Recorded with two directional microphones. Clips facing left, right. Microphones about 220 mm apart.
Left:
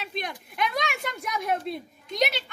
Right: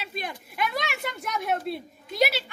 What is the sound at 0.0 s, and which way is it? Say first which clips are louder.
A woman's voice: left 1 dB; 5° right (ahead or behind).